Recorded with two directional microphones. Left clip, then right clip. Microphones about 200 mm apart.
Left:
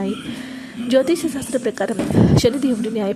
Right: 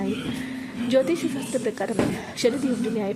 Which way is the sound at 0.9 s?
25° left (ahead or behind).